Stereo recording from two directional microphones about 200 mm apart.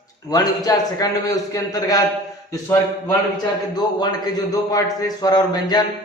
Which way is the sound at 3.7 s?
20° left (ahead or behind).